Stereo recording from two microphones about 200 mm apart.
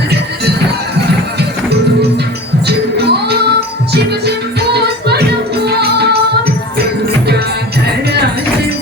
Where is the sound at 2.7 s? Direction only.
55° right (ahead or behind).